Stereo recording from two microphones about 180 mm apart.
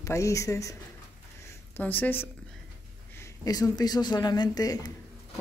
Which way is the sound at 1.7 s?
10° left (ahead or behind).